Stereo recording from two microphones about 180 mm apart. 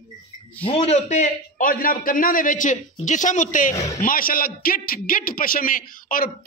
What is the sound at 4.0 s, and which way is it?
A man's voice, 50° left (ahead or behind).